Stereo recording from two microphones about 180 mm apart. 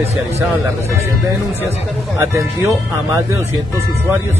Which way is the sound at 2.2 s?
15° right (ahead or behind).